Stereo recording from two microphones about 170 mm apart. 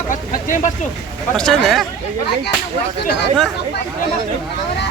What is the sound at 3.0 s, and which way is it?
Speech, 75° left (ahead or behind).